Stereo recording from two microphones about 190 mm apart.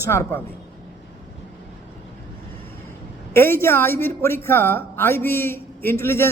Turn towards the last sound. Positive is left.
turn(degrees=15)  # may be behind; listen again after turning